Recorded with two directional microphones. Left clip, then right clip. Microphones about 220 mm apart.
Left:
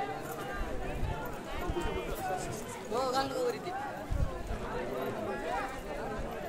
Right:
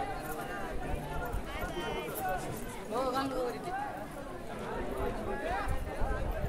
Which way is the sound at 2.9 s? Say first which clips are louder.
Left 1 dB; 50° left (ahead or behind).